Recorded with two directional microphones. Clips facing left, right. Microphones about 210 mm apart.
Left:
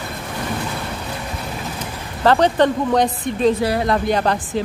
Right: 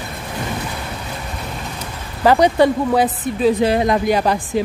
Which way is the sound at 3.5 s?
20° right (ahead or behind).